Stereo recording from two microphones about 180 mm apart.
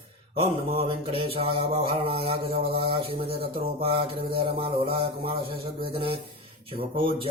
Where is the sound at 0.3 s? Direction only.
30° right (ahead or behind).